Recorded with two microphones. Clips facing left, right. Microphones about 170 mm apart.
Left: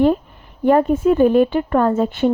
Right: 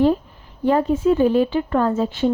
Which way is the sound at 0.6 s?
55° left (ahead or behind).